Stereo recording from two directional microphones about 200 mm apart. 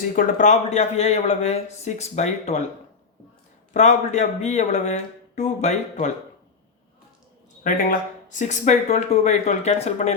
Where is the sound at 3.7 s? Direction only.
35° left (ahead or behind).